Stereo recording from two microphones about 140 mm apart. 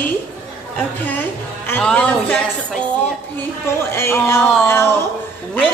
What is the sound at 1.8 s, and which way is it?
Speech, 5° left (ahead or behind).